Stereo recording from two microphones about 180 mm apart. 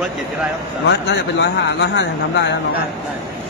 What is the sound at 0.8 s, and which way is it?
Speech, 70° left (ahead or behind).